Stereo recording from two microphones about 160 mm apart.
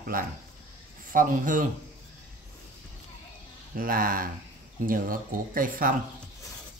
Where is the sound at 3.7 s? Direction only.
60° right (ahead or behind).